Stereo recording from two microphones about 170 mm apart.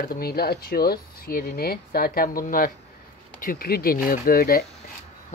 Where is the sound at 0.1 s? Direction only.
65° left (ahead or behind).